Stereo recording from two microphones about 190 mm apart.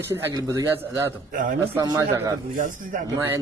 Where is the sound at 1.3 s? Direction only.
45° right (ahead or behind).